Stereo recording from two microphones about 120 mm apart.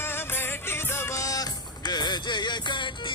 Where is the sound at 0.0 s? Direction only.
20° left (ahead or behind).